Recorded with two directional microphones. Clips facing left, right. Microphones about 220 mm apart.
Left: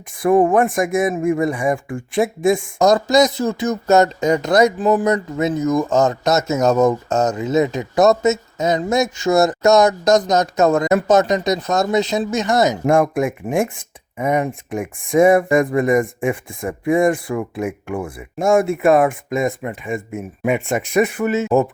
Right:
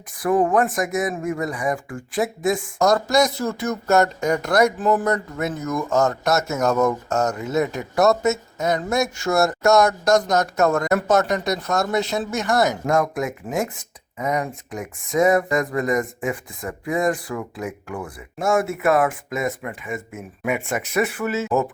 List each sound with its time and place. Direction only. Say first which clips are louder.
0.2 s speech: left 5 dB; 25° left (ahead or behind)